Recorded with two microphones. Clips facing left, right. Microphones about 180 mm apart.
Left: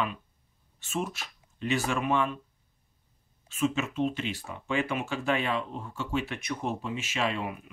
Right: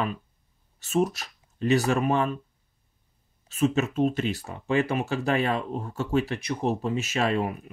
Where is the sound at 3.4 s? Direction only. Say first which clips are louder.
Right 5 dB; 40° right (ahead or behind).